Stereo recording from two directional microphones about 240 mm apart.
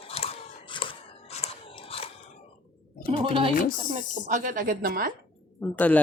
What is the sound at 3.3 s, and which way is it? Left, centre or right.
Speech, right.